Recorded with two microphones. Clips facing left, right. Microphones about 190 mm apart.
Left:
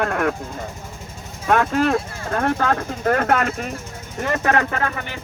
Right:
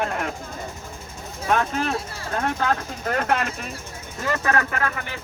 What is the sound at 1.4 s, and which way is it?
Speech, 50° left (ahead or behind).